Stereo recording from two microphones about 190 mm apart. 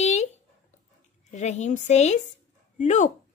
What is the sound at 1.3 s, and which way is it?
A woman's voice, 35° left (ahead or behind).